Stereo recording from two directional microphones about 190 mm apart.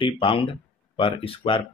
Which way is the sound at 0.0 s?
25° left (ahead or behind).